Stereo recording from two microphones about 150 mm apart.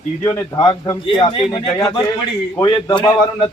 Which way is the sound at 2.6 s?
30° left (ahead or behind).